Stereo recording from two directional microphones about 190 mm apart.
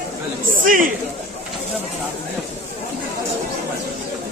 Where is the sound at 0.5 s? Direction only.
45° right (ahead or behind).